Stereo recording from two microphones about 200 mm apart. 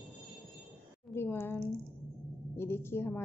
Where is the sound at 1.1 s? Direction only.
10° left (ahead or behind).